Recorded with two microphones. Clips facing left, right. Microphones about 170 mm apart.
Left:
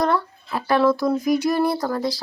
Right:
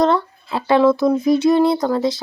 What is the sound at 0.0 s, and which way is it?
A woman's voice, 20° right (ahead or behind).